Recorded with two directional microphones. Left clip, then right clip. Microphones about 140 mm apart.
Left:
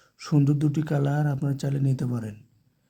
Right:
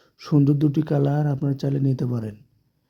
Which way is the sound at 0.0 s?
35° right (ahead or behind).